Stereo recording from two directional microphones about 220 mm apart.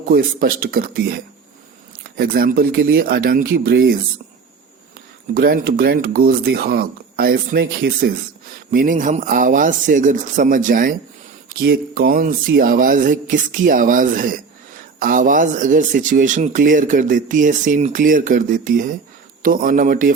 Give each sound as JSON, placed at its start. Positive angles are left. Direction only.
{"t": 0.1, "sound": "speech", "side_deg": -40}
{"t": 5.3, "sound": "speech", "side_deg": -40}